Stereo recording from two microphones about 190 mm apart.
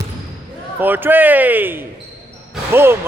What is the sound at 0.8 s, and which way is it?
A man's voice, 10° right (ahead or behind).